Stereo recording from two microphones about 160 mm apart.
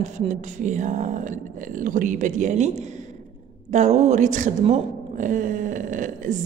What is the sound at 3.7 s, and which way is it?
A woman's voice, 45° right (ahead or behind).